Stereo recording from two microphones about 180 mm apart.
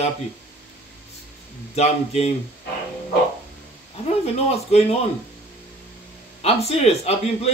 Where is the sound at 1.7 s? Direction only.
35° left (ahead or behind).